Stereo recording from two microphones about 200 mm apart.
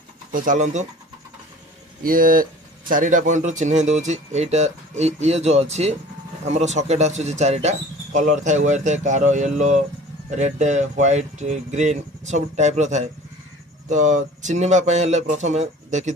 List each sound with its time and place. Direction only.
0.3 s speech: 40° right (ahead or behind)
2.0 s speech: 45° right (ahead or behind)